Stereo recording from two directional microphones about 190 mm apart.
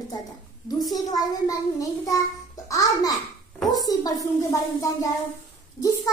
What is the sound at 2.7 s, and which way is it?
Music, 20° left (ahead or behind).